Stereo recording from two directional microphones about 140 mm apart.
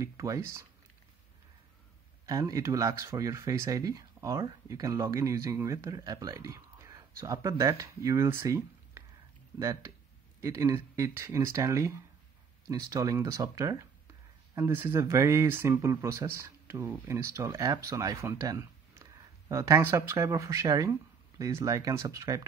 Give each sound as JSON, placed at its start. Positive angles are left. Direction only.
{"t": 0.0, "sound": "speech", "side_deg": -20}
{"t": 2.2, "sound": "speech", "side_deg": -25}